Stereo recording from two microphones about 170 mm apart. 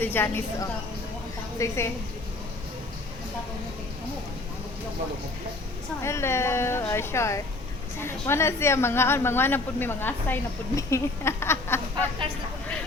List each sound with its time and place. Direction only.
0.0 s a woman's voice: 10° left (ahead or behind)
6.0 s a woman's voice: 15° left (ahead or behind)